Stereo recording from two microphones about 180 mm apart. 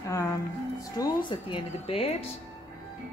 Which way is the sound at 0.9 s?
25° left (ahead or behind).